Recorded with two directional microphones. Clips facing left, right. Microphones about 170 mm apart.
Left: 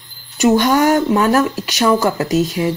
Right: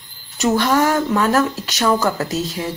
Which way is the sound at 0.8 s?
15° left (ahead or behind).